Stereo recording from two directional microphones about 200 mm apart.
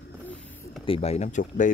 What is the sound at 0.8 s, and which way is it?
Speech, 30° left (ahead or behind).